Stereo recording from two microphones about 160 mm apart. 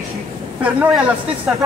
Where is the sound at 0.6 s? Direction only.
10° right (ahead or behind).